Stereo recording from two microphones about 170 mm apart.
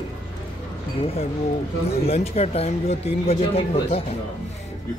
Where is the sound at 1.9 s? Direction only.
35° left (ahead or behind).